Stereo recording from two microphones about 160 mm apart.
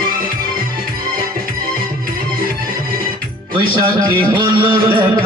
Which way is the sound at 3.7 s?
30° right (ahead or behind).